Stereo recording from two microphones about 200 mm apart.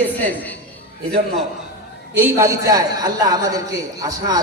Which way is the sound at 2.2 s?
10° right (ahead or behind).